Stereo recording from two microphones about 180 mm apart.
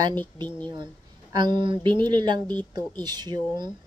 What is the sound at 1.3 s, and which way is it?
Speech, 25° right (ahead or behind).